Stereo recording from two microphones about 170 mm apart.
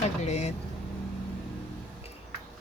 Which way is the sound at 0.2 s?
40° left (ahead or behind).